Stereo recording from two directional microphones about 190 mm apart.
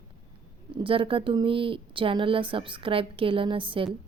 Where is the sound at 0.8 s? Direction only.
25° right (ahead or behind).